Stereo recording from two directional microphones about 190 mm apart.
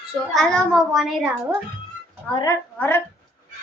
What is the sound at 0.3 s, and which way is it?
A child's voice, centre (ahead or behind).